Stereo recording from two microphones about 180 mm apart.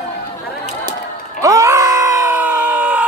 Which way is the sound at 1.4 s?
15° right (ahead or behind).